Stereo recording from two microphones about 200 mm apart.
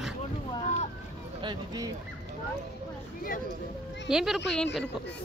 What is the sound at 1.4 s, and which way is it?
Speech, 20° right (ahead or behind).